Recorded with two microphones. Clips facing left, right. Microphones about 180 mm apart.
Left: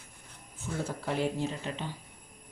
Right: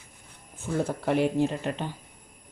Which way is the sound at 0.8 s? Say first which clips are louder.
Right 6 dB; 60° right (ahead or behind).